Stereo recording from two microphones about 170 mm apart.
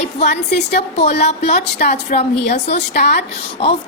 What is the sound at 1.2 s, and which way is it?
A woman's voice, 40° left (ahead or behind).